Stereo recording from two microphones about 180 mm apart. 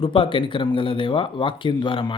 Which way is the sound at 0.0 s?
30° left (ahead or behind).